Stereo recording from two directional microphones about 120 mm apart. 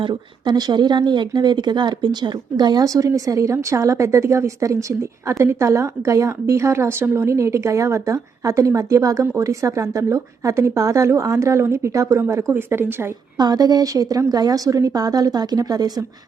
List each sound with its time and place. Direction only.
0.0 s speech: 40° right (ahead or behind); by 13.1 s 20° right (ahead or behind)
13.3 s a woman's voice: 35° right (ahead or behind)